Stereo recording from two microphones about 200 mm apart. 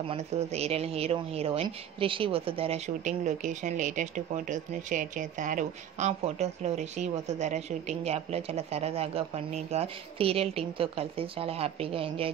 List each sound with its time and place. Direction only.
0.1 s speech: 30° right (ahead or behind)